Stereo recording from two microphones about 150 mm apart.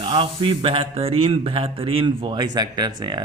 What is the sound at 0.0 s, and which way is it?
Speech, 35° right (ahead or behind).